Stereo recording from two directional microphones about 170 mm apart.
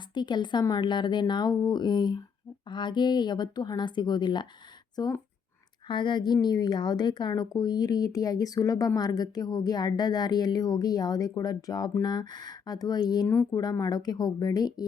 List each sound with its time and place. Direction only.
0.1 s a woman's voice: 25° left (ahead or behind)
13.2 s speech: 10° left (ahead or behind)
13.6 s a woman's voice: 20° left (ahead or behind)